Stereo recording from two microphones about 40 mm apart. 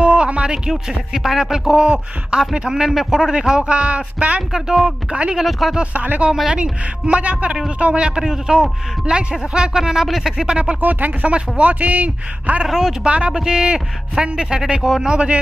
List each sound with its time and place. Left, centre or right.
0.0 s a sound: right
0.7 s speech: centre
2.9 s speech: centre
3.3 s speech: right
4.4 s speech: centre
5.9 s a man's voice: right
6.5 s a man's voice: right
8.2 s speech: centre
10.4 s speech: right
10.8 s a man's voice: right
12.6 s speech: centre
13.0 s speech: right; by 15.0 s centre
15.0 s speech: right